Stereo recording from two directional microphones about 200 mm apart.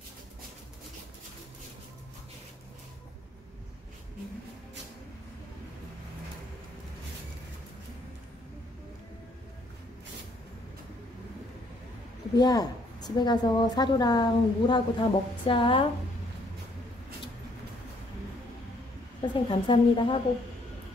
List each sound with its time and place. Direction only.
12.4 s a woman's voice: 20° left (ahead or behind)
19.3 s a woman's voice: 25° left (ahead or behind)